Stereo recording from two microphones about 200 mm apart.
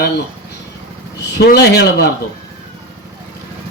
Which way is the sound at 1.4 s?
55° left (ahead or behind).